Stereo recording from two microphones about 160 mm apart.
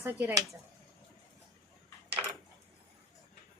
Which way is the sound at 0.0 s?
15° right (ahead or behind).